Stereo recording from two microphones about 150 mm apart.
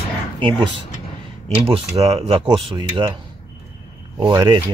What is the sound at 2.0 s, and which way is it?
Speech, 35° right (ahead or behind).